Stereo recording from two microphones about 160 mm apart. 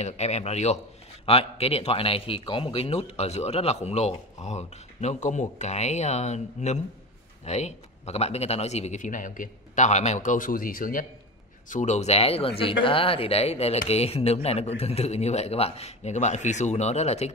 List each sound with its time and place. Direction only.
0.0 s a man's voice: 45° left (ahead or behind); by 11.1 s 60° left (ahead or behind)
11.7 s a man's voice: 45° left (ahead or behind)